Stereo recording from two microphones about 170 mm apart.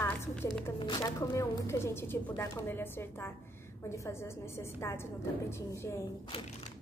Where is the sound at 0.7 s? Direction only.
25° left (ahead or behind).